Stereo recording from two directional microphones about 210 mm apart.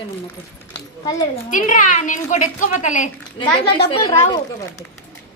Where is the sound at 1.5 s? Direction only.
40° left (ahead or behind).